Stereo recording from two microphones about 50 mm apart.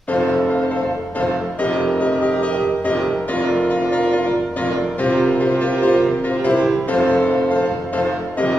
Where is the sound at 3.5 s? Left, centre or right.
Left.